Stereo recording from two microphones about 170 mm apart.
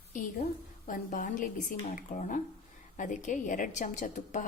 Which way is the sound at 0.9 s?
50° left (ahead or behind).